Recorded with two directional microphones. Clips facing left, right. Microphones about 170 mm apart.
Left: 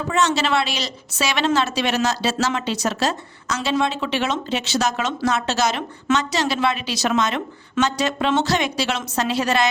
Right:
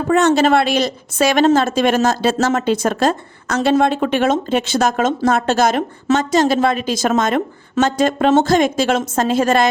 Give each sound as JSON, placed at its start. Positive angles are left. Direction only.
{"t": 0.1, "sound": "a woman's voice", "side_deg": -55}